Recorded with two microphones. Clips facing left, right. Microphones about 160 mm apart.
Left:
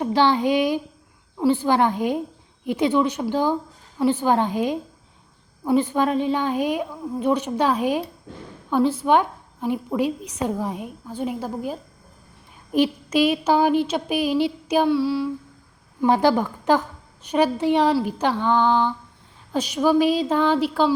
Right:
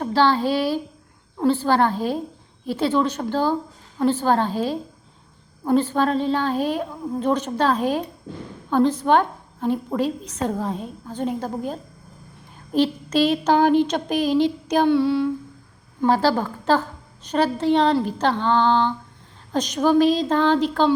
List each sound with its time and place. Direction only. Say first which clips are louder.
0.0 s a woman's voice: even; 20° left (ahead or behind); by 15.3 s centre (ahead or behind)
16.0 s a woman's voice: left 1 dB; 20° left (ahead or behind)